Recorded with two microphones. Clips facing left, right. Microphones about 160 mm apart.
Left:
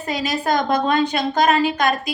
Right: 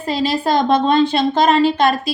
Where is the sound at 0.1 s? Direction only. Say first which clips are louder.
Right 4 dB; 30° right (ahead or behind).